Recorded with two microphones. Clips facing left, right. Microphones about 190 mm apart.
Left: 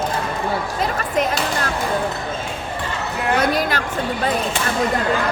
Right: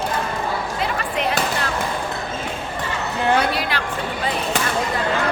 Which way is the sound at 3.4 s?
45° left (ahead or behind).